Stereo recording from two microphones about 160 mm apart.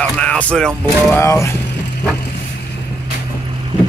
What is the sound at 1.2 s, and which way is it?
Speech, 20° left (ahead or behind).